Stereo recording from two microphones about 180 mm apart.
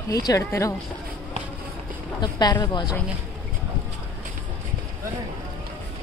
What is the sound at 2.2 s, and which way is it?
Speech, 25° left (ahead or behind).